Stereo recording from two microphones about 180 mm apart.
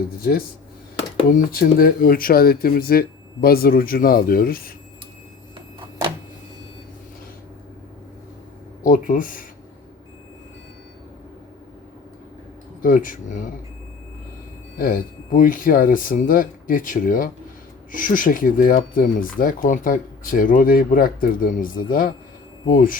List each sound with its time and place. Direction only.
0.2 s speech: 55° left (ahead or behind)
8.8 s speech: 50° left (ahead or behind)
12.8 s speech: 50° left (ahead or behind)
14.8 s speech: 50° left (ahead or behind)